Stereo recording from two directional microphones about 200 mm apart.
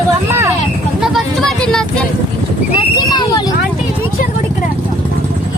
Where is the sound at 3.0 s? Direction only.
20° left (ahead or behind).